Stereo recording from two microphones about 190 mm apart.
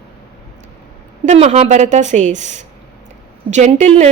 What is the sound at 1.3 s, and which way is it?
A woman's voice, 35° right (ahead or behind).